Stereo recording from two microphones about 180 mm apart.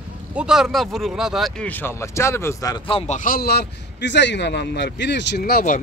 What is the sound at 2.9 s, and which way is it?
Speech, 30° left (ahead or behind).